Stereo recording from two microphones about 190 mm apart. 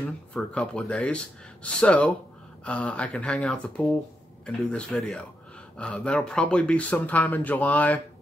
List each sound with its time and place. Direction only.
0.0 s speech: 5° left (ahead or behind)